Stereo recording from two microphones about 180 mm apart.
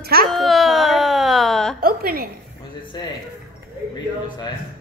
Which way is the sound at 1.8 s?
55° right (ahead or behind).